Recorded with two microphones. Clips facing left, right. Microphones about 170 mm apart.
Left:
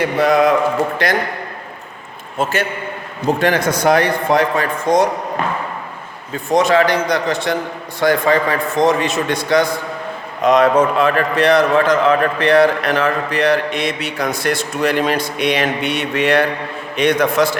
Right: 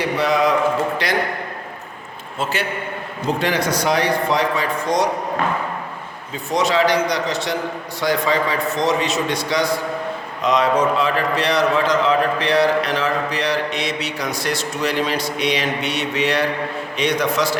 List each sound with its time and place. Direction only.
0.0 s a man's voice: 50° left (ahead or behind)
2.4 s a man's voice: 50° left (ahead or behind)
6.3 s a man's voice: 50° left (ahead or behind)